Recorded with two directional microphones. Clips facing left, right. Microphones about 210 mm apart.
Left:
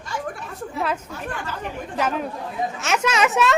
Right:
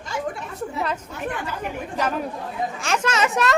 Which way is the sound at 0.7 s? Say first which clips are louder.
Left 4 dB; 5° left (ahead or behind).